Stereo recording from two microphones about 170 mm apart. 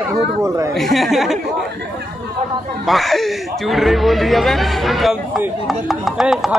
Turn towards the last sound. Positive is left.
turn(degrees=0)  # may be behind; listen again after turning